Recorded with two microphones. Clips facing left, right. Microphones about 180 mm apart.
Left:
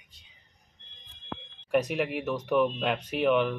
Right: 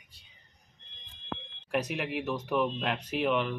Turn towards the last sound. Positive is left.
turn(degrees=0)  # may be behind; listen again after turning